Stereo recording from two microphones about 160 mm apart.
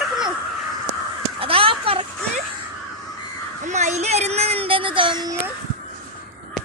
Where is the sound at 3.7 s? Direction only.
45° right (ahead or behind); by 5.4 s 25° right (ahead or behind).